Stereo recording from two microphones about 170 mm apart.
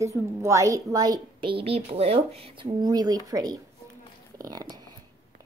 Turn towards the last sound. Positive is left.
turn(degrees=-25)  # may be behind; listen again after turning